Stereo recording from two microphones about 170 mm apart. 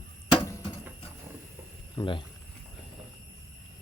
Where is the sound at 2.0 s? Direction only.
30° left (ahead or behind).